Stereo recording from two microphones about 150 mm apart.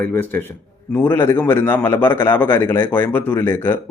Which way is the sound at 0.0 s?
15° left (ahead or behind).